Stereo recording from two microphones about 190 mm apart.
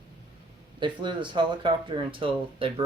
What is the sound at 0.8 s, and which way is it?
Speech, 25° right (ahead or behind).